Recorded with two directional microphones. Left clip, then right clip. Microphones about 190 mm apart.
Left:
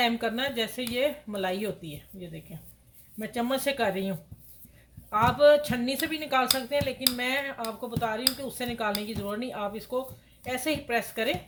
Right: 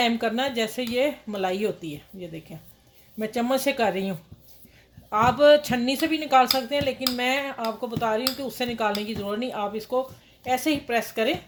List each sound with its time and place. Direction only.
0.0 s speech: 35° right (ahead or behind)